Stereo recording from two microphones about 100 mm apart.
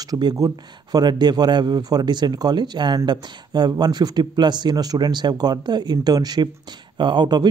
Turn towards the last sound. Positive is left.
turn(degrees=-45)  # may be behind; listen again after turning